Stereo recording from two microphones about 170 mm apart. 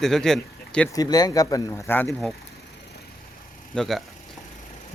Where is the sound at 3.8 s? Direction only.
Centre (ahead or behind).